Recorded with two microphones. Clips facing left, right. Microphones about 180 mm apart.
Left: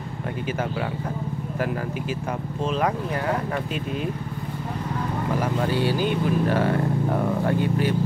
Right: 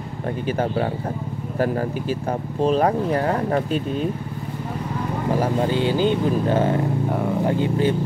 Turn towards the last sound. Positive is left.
turn(degrees=-25)  # may be behind; listen again after turning